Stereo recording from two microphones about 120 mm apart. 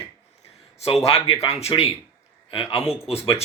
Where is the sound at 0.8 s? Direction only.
60° left (ahead or behind).